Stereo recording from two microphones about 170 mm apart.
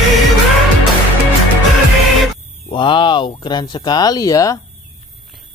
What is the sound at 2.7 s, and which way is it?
Speech, 30° left (ahead or behind).